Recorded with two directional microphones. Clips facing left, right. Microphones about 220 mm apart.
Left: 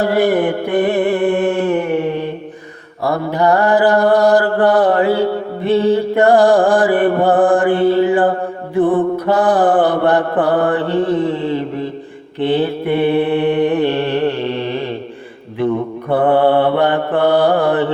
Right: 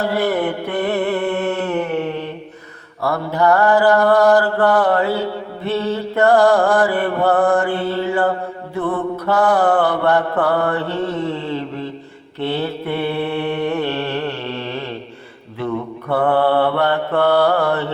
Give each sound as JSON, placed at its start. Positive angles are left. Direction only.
{"t": 0.0, "sound": "music", "side_deg": 15}
{"t": 3.0, "sound": "mantra", "side_deg": 15}
{"t": 16.0, "sound": "mantra", "side_deg": 20}